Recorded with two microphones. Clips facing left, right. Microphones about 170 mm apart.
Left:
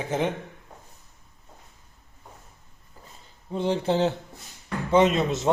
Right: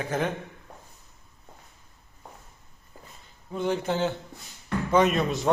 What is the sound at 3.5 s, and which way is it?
A man's voice, 30° left (ahead or behind).